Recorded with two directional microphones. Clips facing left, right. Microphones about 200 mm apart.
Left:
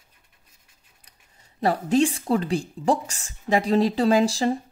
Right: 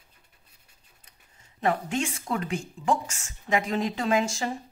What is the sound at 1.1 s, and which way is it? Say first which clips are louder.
Speech: left 2 dB; 35° left (ahead or behind).